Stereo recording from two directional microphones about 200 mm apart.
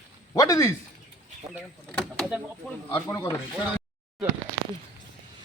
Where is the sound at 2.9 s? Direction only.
15° left (ahead or behind).